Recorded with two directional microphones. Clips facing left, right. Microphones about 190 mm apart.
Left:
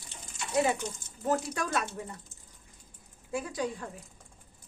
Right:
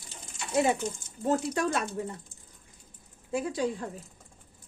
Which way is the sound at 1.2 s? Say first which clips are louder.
Right 3 dB; 30° right (ahead or behind).